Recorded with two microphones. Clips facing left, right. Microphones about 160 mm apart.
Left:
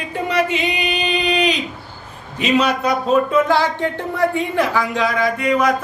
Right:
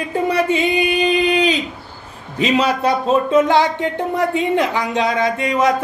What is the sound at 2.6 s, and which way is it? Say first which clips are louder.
Speech: right 1 dB; 30° right (ahead or behind).